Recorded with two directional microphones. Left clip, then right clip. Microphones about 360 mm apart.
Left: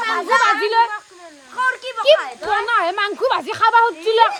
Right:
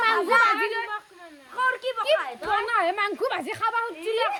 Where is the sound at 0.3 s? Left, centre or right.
Left.